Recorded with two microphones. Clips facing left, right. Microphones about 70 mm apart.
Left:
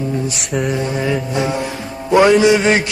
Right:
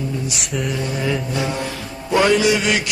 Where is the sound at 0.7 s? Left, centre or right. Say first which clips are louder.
Left 4 dB; left.